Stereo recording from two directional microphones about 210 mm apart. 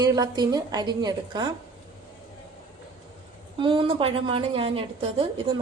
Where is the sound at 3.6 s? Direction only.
25° right (ahead or behind).